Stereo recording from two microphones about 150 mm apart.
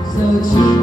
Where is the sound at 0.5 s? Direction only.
25° left (ahead or behind).